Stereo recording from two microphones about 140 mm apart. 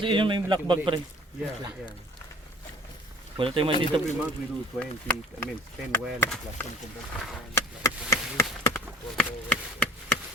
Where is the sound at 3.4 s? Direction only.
40° right (ahead or behind).